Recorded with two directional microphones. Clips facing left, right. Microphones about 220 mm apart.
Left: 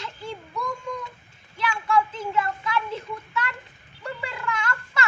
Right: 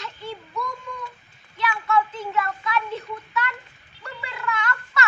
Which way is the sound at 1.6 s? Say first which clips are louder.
Even; 30° left (ahead or behind).